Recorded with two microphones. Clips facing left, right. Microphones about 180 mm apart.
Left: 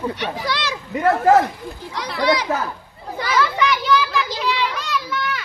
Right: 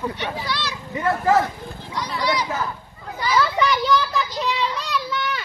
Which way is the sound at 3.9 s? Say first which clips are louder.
Left 1 dB; 90° left.